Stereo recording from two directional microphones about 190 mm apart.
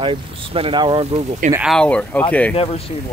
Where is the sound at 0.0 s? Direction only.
30° right (ahead or behind).